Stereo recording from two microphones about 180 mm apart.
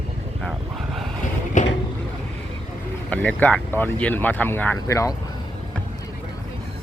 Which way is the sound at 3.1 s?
10° left (ahead or behind).